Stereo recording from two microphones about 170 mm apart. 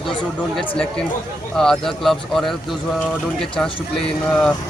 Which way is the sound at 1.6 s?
5° left (ahead or behind).